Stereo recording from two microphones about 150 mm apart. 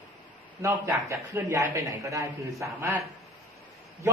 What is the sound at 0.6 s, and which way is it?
A man's voice, 20° right (ahead or behind).